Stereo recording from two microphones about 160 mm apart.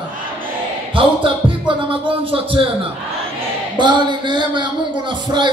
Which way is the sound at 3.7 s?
30° right (ahead or behind).